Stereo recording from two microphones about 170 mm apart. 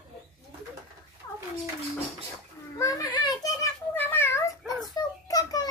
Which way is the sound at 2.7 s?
20° left (ahead or behind).